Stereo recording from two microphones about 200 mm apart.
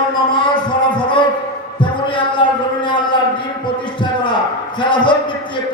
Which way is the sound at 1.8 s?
25° left (ahead or behind).